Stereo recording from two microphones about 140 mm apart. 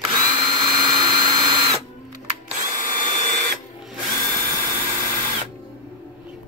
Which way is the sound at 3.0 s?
35° right (ahead or behind).